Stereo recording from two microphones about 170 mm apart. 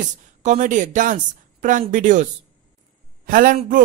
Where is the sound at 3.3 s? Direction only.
55° right (ahead or behind).